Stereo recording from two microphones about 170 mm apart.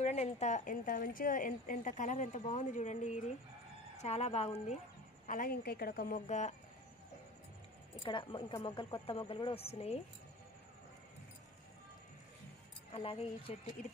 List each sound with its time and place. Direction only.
0.0 s a woman's voice: 40° left (ahead or behind)
5.2 s a woman's voice: 50° left (ahead or behind)
7.9 s a woman's voice: 30° left (ahead or behind)
12.9 s a woman's voice: 35° left (ahead or behind)